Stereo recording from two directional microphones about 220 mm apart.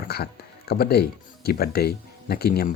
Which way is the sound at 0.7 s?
45° left (ahead or behind).